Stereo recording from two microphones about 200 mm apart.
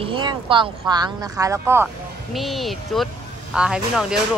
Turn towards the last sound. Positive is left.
turn(degrees=-5)  # may be behind; listen again after turning